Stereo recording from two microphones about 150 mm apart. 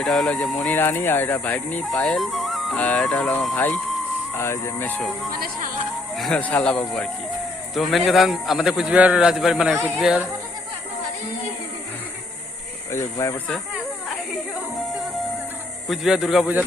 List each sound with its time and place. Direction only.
0.0 s a man's voice: 5° left (ahead or behind)
4.4 s speech: 20° left (ahead or behind)
6.1 s a man's voice: 5° left (ahead or behind)
12.9 s speech: 20° left (ahead or behind)
15.9 s a man's voice: centre (ahead or behind)